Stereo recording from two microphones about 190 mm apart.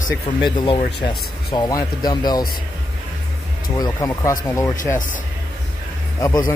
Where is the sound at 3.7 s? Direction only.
20° left (ahead or behind).